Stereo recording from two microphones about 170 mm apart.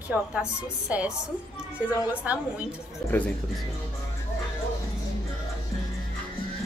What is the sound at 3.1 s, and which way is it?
Speech, 10° left (ahead or behind).